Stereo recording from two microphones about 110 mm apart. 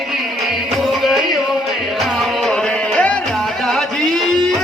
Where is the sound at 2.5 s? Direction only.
10° left (ahead or behind).